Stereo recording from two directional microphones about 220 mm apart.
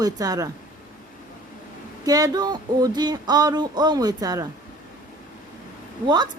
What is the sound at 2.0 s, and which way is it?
Speech, 15° right (ahead or behind).